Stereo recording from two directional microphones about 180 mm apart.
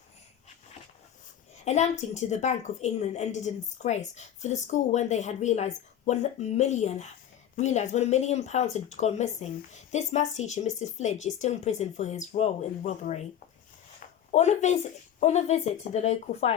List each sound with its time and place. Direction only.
1.6 s speech: 40° left (ahead or behind)
14.3 s speech: 40° left (ahead or behind)